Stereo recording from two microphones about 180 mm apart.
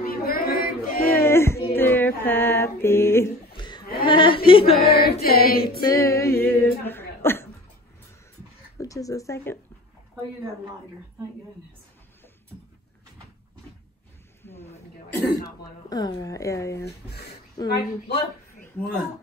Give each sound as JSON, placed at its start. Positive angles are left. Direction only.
{"t": 0.0, "sound": "female singing", "side_deg": 55}
{"t": 1.1, "sound": "a sound", "side_deg": 15}
{"t": 1.8, "sound": "female singing", "side_deg": 10}
{"t": 3.5, "sound": "chuckle", "side_deg": 25}
{"t": 4.0, "sound": "a sound", "side_deg": 25}
{"t": 4.8, "sound": "music", "side_deg": 60}
{"t": 5.2, "sound": "a woman's voice", "side_deg": 55}
{"t": 5.8, "sound": "female singing", "side_deg": 20}
{"t": 6.4, "sound": "a sound", "side_deg": 10}
{"t": 8.7, "sound": "speech", "side_deg": 20}
{"t": 14.4, "sound": "a sound", "side_deg": 10}
{"t": 15.3, "sound": "speech", "side_deg": 20}
{"t": 17.6, "sound": "a woman's voice", "side_deg": 60}